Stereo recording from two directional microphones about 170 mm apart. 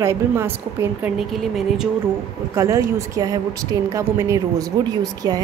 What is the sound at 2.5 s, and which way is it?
A woman's voice, 20° right (ahead or behind).